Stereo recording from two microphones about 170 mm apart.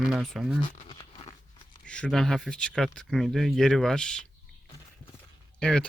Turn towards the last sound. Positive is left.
turn(degrees=5)  # may be behind; listen again after turning